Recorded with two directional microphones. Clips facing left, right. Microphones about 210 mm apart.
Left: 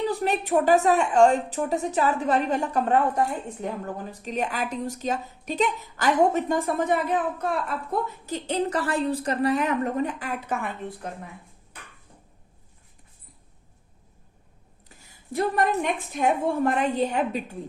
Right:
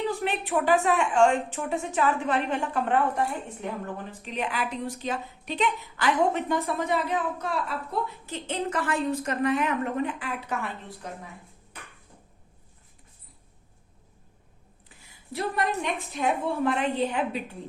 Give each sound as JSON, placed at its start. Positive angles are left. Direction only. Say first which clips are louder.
{"t": 0.2, "sound": "a woman's voice", "louder": "left 4 dB", "side_deg": 40}
{"t": 14.8, "sound": "a sound", "louder": "left 3 dB", "side_deg": 45}
{"t": 16.6, "sound": "a woman's voice", "louder": "even", "side_deg": 45}